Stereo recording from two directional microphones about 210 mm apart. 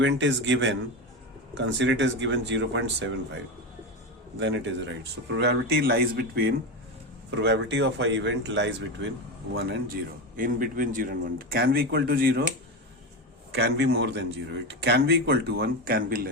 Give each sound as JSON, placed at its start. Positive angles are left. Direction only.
{"t": 0.0, "sound": "speech", "side_deg": -60}
{"t": 4.4, "sound": "a man's voice", "side_deg": -60}
{"t": 13.5, "sound": "a man's voice", "side_deg": -55}